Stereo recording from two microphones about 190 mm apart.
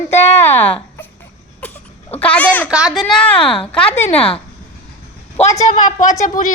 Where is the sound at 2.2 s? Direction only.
5° left (ahead or behind).